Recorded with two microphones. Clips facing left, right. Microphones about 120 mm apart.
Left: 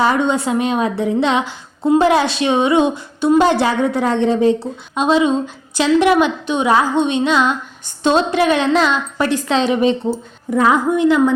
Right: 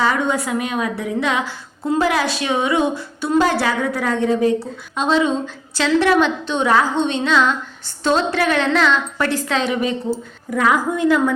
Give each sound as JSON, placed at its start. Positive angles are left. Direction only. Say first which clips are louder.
{"t": 0.0, "sound": "a woman's voice", "louder": "left 3 dB", "side_deg": 25}
{"t": 5.7, "sound": "music", "louder": "left 3 dB", "side_deg": 15}
{"t": 8.0, "sound": "a woman's voice", "louder": "left 3 dB", "side_deg": 20}